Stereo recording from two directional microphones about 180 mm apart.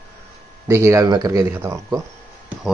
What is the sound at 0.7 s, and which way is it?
Speech, 15° right (ahead or behind).